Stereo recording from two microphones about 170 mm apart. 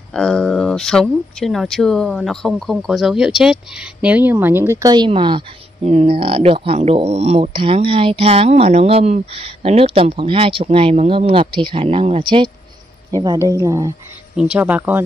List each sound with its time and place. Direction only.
0.1 s speech: 5° left (ahead or behind); by 13.9 s 20° right (ahead or behind)
14.3 s speech: 5° right (ahead or behind)